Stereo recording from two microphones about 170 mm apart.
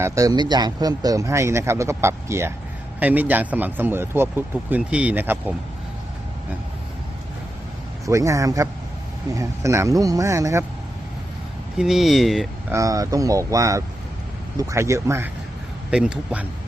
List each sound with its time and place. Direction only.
0.0 s speech: 20° right (ahead or behind)
8.0 s speech: 20° right (ahead or behind)
11.8 s speech: centre (ahead or behind)
12.7 s speech: 20° right (ahead or behind)
15.9 s speech: 5° right (ahead or behind)